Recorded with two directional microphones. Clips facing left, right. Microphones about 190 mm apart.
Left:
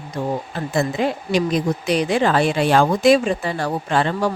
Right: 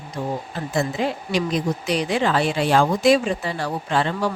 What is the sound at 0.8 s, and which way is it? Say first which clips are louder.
A woman's voice: left 2 dB; 55° left (ahead or behind).